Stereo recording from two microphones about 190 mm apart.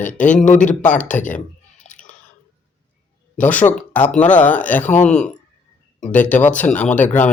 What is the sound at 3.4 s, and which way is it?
Speech, 10° left (ahead or behind).